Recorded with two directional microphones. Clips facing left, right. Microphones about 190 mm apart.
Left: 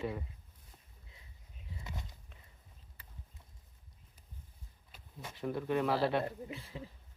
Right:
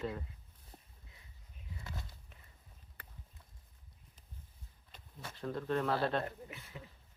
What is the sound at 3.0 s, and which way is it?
Clip-clop, 55° right (ahead or behind).